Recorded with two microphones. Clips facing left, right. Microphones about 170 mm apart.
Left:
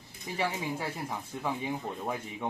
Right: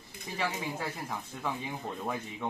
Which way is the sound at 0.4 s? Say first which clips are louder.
Left 2 dB; 10° left (ahead or behind).